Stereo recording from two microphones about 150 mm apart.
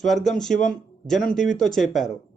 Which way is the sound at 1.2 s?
65° left (ahead or behind).